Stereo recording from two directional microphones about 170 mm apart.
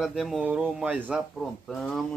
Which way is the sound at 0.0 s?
Centre (ahead or behind).